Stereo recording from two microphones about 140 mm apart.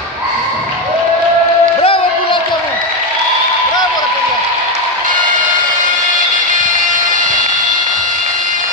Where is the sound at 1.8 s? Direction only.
40° left (ahead or behind).